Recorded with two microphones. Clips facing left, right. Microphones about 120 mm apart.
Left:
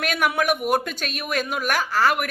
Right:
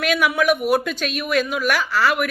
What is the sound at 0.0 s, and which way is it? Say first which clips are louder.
Speech: right 4 dB; 45° left (ahead or behind).